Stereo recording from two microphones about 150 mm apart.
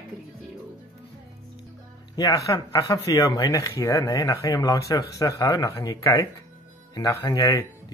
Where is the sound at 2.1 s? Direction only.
25° left (ahead or behind).